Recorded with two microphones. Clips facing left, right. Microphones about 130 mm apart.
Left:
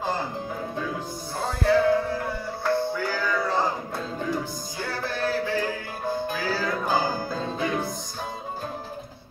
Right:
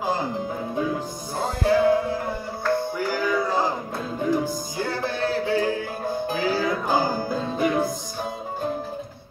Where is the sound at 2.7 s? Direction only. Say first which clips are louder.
Right 1 dB; 15° right (ahead or behind).